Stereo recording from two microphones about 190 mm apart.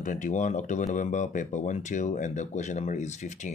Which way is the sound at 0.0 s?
40° left (ahead or behind).